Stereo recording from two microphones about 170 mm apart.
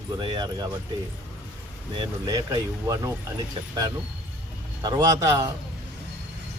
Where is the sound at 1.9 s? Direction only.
20° right (ahead or behind).